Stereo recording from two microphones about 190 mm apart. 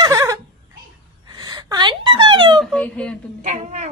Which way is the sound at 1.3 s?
25° right (ahead or behind).